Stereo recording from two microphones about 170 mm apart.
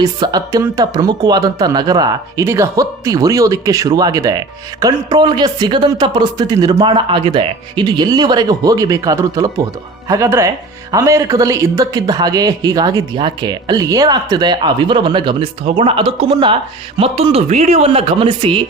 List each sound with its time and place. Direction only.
0.0 s speech: 25° right (ahead or behind)